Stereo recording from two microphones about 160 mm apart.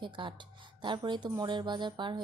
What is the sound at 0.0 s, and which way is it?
Speech, 30° right (ahead or behind).